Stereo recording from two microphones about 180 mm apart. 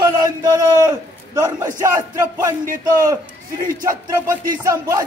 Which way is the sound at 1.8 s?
15° right (ahead or behind).